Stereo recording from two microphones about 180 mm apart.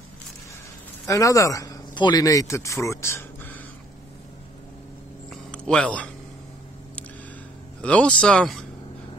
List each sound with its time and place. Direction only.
1.0 s speech: 20° left (ahead or behind)
5.3 s a sound: 5° left (ahead or behind)
7.8 s speech: 5° left (ahead or behind)